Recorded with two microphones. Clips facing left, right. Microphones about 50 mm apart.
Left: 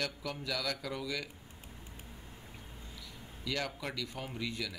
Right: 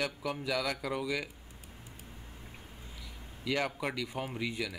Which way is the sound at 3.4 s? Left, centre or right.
Right.